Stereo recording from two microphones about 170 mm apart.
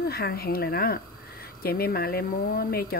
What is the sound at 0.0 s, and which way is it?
Speech, 65° left (ahead or behind).